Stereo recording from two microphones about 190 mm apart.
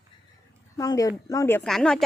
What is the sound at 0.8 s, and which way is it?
Speech, 20° left (ahead or behind).